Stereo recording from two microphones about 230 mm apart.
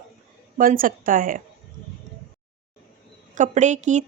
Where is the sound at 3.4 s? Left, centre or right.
Right.